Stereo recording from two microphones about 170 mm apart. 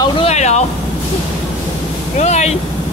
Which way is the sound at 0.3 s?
40° left (ahead or behind).